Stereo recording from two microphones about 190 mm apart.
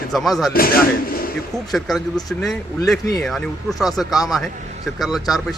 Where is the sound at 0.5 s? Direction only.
50° left (ahead or behind).